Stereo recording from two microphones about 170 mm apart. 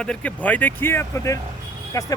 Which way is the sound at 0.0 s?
5° left (ahead or behind).